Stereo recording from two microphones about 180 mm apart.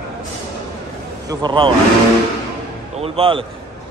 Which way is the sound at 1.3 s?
25° right (ahead or behind).